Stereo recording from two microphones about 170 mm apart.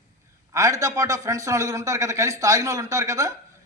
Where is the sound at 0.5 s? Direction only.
20° right (ahead or behind).